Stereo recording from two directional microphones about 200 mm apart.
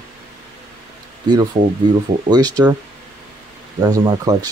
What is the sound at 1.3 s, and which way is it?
Speech, 20° right (ahead or behind).